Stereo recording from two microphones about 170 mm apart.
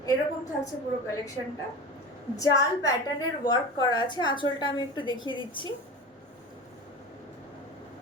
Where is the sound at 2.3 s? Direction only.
20° left (ahead or behind).